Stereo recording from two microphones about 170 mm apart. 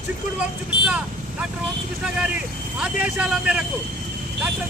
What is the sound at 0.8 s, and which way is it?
Speech, 5° right (ahead or behind).